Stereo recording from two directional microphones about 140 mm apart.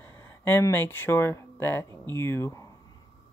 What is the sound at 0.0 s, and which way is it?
Speech, 15° left (ahead or behind).